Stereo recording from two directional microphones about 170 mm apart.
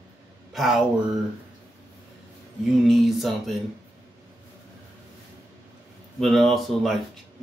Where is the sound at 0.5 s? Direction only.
Centre (ahead or behind).